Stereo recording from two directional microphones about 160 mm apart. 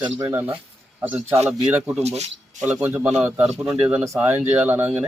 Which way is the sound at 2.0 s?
45° right (ahead or behind).